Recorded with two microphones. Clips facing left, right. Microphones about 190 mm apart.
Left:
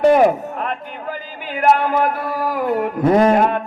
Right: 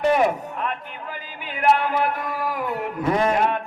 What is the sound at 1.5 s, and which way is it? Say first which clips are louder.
A man's voice: left 4 dB; 40° left (ahead or behind).